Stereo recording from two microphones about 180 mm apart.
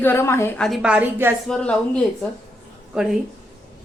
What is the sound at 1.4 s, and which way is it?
Speech, 5° left (ahead or behind).